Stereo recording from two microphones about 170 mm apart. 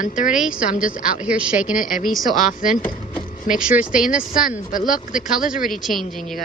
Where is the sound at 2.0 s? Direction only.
Centre (ahead or behind).